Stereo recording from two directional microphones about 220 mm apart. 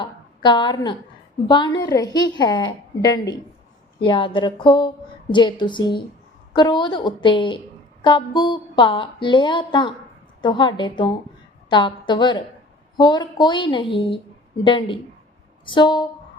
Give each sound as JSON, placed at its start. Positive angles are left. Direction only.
{"t": 0.0, "sound": "a woman's voice", "side_deg": 20}